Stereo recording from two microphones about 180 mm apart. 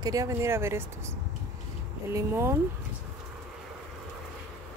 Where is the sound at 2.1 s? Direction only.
15° right (ahead or behind).